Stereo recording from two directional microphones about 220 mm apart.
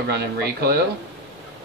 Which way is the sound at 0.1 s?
45° right (ahead or behind).